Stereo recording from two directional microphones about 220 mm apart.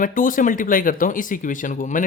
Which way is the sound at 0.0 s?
40° left (ahead or behind).